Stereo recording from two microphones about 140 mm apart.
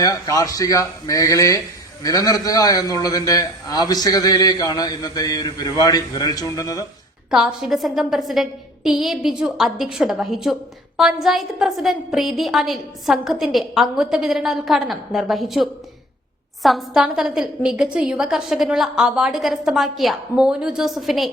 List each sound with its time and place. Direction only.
0.0 s a man's voice: 25° left (ahead or behind)
7.3 s a woman's voice: 5° right (ahead or behind)